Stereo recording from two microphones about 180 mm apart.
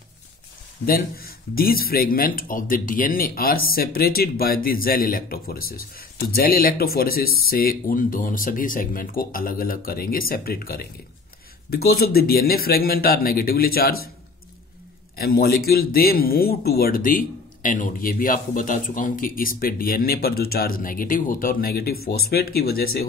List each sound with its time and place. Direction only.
0.8 s speech: 55° left (ahead or behind)
15.1 s speech: 60° left (ahead or behind)